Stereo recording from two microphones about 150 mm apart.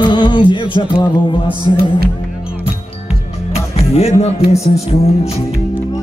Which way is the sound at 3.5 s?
45° left (ahead or behind).